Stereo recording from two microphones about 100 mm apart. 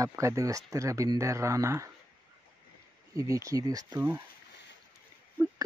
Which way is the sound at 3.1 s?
35° right (ahead or behind).